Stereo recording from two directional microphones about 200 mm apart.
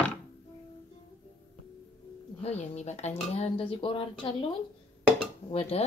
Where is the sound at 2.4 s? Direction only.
35° left (ahead or behind).